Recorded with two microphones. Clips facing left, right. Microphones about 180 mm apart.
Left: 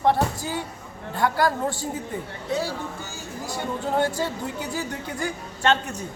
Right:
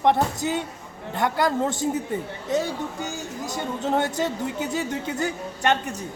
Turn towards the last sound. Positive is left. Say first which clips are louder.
# even
turn(degrees=-15)  # may be behind; listen again after turning